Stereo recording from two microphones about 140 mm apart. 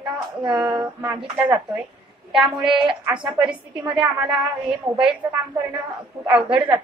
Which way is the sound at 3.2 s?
35° right (ahead or behind).